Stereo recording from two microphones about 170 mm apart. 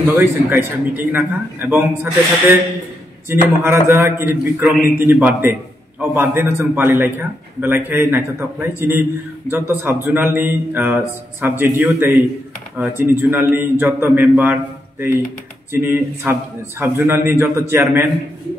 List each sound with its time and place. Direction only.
0.2 s a man's voice: 10° right (ahead or behind)
3.3 s a man's voice: 15° right (ahead or behind)